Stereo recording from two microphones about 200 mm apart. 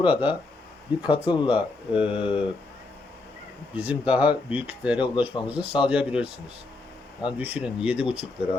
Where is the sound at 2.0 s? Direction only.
25° left (ahead or behind).